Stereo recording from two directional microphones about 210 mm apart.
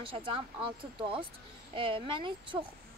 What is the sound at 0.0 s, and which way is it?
A child's voice, 25° right (ahead or behind).